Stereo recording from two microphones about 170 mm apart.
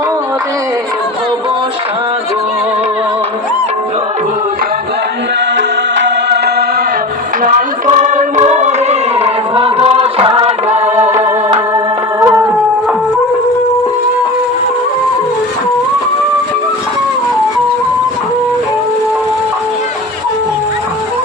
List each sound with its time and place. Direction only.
5.5 s music: 90° right
7.4 s singing: 50° right (ahead or behind)
12.2 s a sound: 20° right (ahead or behind)